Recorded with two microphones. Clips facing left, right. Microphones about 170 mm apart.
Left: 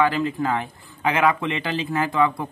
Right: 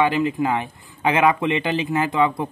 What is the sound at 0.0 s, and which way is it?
Speech, 20° right (ahead or behind).